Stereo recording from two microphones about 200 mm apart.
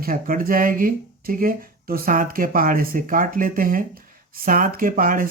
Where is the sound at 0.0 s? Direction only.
45° right (ahead or behind).